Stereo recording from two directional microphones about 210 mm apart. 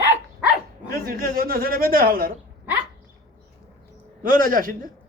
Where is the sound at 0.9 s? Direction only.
45° right (ahead or behind).